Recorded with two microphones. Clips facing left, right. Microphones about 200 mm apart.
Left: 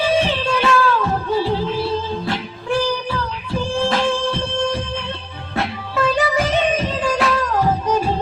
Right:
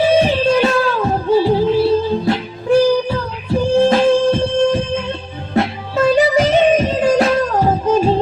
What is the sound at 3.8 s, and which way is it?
Music, 20° right (ahead or behind).